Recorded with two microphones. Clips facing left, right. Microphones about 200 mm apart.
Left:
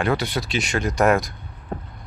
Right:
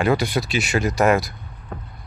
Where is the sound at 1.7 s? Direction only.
30° left (ahead or behind).